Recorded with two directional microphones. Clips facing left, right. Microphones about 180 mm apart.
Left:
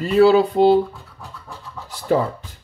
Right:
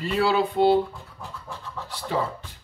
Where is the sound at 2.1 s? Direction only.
45° left (ahead or behind).